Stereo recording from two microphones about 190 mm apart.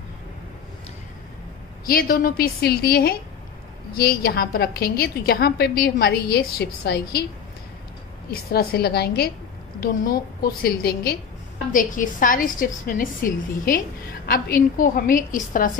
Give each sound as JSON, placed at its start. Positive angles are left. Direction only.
{"t": 1.9, "sound": "a woman's voice", "side_deg": 50}
{"t": 8.3, "sound": "a woman's voice", "side_deg": 55}